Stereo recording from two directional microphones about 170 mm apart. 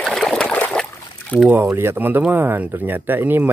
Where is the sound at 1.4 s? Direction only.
15° right (ahead or behind).